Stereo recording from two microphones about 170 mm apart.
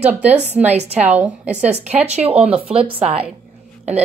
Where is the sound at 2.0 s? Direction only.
40° right (ahead or behind).